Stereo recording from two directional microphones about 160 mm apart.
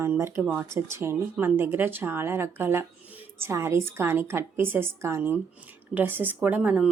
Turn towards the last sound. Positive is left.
turn(degrees=-10)  # may be behind; listen again after turning